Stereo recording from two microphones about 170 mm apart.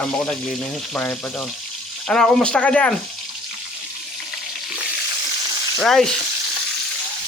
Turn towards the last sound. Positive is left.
turn(degrees=0)  # may be behind; listen again after turning